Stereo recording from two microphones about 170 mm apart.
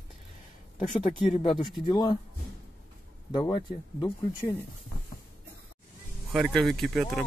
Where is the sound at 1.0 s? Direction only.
40° left (ahead or behind).